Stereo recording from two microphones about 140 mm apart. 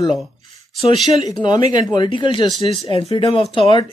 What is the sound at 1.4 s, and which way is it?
Speech, 30° left (ahead or behind).